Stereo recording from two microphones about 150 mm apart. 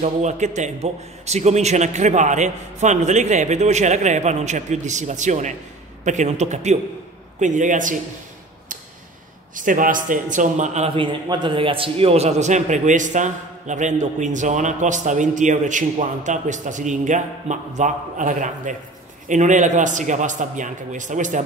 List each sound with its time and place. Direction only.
0.0 s a man's voice: 50° right (ahead or behind)
9.6 s a man's voice: 60° right (ahead or behind)
10.9 s a man's voice: 35° right (ahead or behind); by 21.5 s 55° right (ahead or behind)